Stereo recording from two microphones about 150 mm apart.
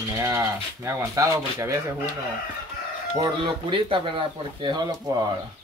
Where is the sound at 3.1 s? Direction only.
30° right (ahead or behind).